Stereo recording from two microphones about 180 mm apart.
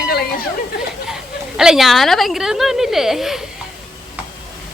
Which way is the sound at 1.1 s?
5° right (ahead or behind).